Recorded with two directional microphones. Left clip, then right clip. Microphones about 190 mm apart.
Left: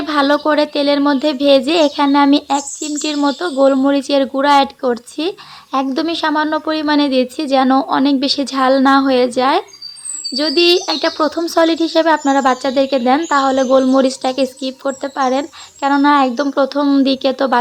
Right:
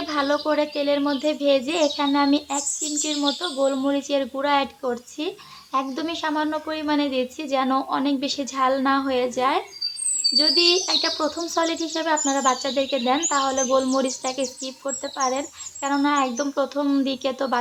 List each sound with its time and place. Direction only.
0.0 s speech: 40° left (ahead or behind)